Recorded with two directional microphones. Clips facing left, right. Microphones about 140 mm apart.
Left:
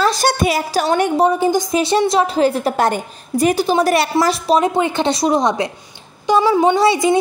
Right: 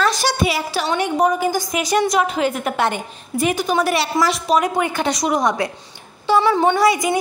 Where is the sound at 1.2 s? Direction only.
25° left (ahead or behind).